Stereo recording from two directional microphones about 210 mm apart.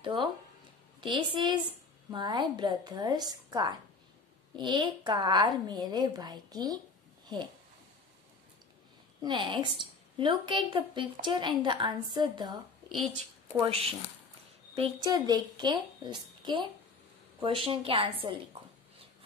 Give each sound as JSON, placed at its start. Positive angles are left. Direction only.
{"t": 0.0, "sound": "a woman's voice", "side_deg": -25}
{"t": 9.2, "sound": "a woman's voice", "side_deg": -20}
{"t": 13.6, "sound": "a woman's voice", "side_deg": -25}